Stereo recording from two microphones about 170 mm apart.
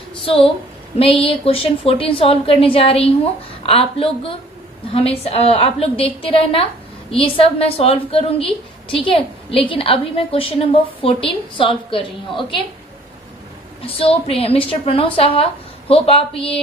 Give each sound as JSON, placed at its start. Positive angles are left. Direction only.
{"t": 0.1, "sound": "a sound", "side_deg": 35}
{"t": 0.9, "sound": "a woman's voice", "side_deg": 35}
{"t": 13.8, "sound": "a woman's voice", "side_deg": 35}